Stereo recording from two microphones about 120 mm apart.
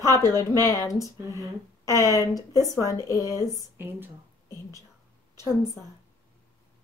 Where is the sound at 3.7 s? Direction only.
20° right (ahead or behind).